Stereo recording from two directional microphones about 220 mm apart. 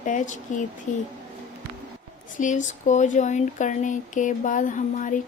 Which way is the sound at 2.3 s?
35° left (ahead or behind).